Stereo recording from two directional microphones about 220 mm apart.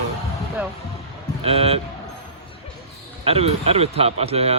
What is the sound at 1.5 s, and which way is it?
Speech, 25° right (ahead or behind).